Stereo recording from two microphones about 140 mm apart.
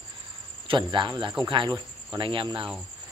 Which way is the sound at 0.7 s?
35° right (ahead or behind).